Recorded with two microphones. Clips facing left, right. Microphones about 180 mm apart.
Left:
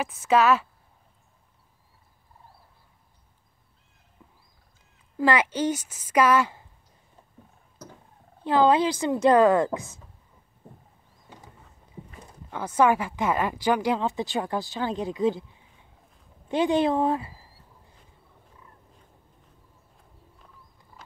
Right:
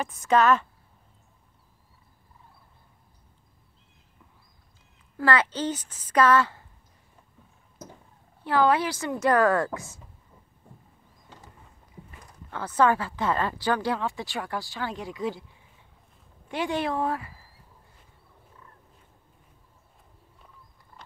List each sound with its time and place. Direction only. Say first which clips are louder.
0.0 s speech: left 1 dB; 5° left (ahead or behind)
5.1 s speech: left 2 dB; 15° left (ahead or behind)
8.5 s a woman's voice: left 3 dB; 20° left (ahead or behind)
12.4 s speech: left 1 dB; 10° left (ahead or behind)
16.4 s speech: left 6 dB; 20° left (ahead or behind)
20.3 s a sound: left 1 dB; centre (ahead or behind)